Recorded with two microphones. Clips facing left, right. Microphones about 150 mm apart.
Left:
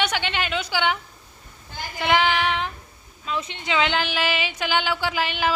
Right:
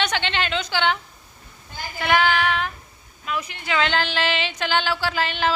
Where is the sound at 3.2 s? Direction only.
25° left (ahead or behind).